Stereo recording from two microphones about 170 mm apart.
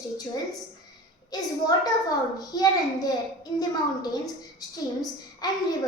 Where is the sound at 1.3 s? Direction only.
20° left (ahead or behind).